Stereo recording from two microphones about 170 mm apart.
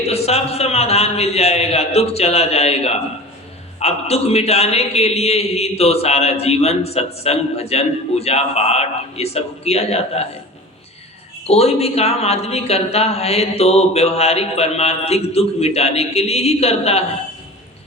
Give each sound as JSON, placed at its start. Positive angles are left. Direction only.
{"t": 0.0, "sound": "a man's voice", "side_deg": 35}
{"t": 11.4, "sound": "a man's voice", "side_deg": 35}